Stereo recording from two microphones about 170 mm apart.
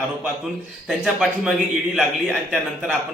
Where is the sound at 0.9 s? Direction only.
5° right (ahead or behind).